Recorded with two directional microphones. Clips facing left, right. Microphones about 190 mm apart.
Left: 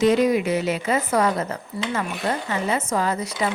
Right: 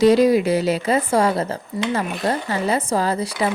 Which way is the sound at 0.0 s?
35° right (ahead or behind).